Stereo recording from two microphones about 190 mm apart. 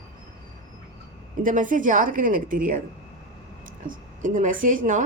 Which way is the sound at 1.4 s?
45° right (ahead or behind).